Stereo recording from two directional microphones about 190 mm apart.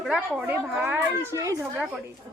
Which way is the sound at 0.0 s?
5° right (ahead or behind).